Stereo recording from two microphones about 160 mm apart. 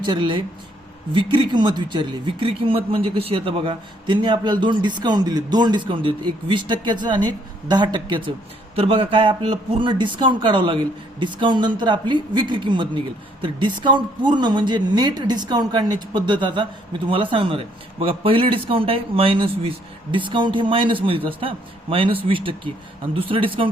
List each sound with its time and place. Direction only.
0.0 s speech: 30° right (ahead or behind)